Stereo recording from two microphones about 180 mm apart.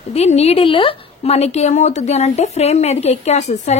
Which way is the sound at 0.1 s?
35° left (ahead or behind).